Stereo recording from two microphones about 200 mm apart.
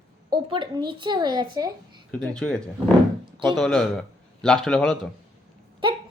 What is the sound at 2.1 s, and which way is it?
A man's voice, 5° left (ahead or behind).